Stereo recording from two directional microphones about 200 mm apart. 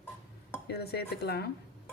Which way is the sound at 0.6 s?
55° left (ahead or behind).